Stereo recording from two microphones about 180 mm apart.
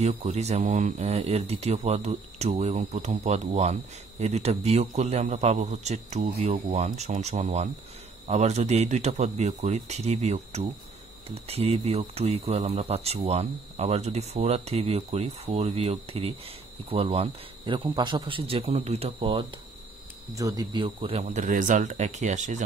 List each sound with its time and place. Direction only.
0.0 s speech: 35° right (ahead or behind)